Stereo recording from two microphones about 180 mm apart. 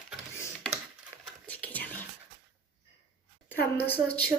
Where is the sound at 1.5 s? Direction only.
10° left (ahead or behind).